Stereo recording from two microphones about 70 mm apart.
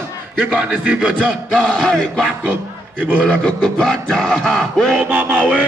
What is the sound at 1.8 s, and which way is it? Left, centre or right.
Music, centre.